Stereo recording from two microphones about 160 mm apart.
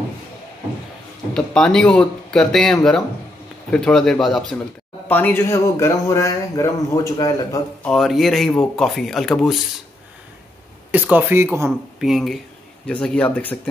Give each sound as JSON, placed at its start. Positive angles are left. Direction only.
{"t": 1.3, "sound": "speech", "side_deg": 5}
{"t": 7.8, "sound": "speech", "side_deg": 0}
{"t": 10.9, "sound": "speech", "side_deg": -10}
{"t": 12.0, "sound": "speech", "side_deg": 0}